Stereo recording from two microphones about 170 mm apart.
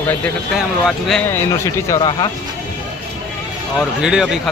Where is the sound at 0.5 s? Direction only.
Centre (ahead or behind).